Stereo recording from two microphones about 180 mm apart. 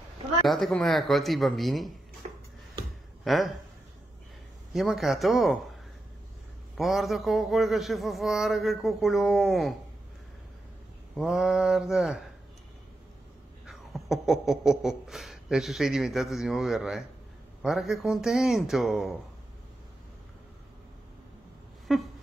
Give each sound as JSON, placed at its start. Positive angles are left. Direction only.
{"t": 0.5, "sound": "speech", "side_deg": 0}
{"t": 2.2, "sound": "music", "side_deg": -45}
{"t": 3.3, "sound": "speech", "side_deg": 0}
{"t": 4.7, "sound": "speech", "side_deg": 0}
{"t": 6.8, "sound": "speech", "side_deg": 0}
{"t": 11.1, "sound": "speech", "side_deg": 0}
{"t": 13.7, "sound": "speech", "side_deg": 0}
{"t": 21.9, "sound": "a sound", "side_deg": 0}